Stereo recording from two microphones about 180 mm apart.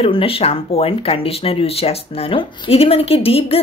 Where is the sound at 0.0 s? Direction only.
30° left (ahead or behind).